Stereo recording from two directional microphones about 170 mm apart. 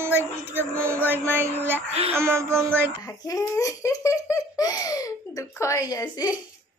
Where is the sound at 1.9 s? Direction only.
35° right (ahead or behind).